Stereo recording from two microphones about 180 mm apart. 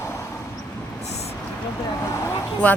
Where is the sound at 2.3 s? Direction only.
15° left (ahead or behind).